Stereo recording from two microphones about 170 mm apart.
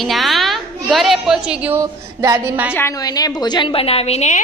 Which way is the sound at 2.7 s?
15° left (ahead or behind).